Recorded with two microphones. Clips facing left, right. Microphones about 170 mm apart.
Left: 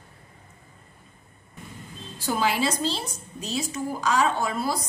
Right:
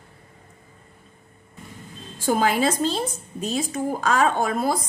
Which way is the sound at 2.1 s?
50° right (ahead or behind).